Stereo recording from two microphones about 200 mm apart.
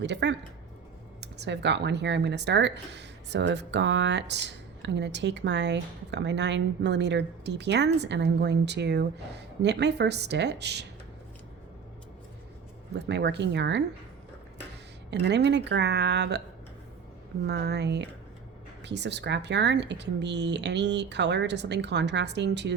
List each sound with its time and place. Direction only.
0.0 s speech: 60° right (ahead or behind)
12.9 s speech: 60° right (ahead or behind)
15.1 s speech: 60° right (ahead or behind)
17.4 s speech: 55° right (ahead or behind)